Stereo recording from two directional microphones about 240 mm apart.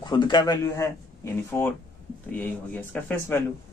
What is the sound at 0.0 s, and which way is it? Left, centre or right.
Speech, centre.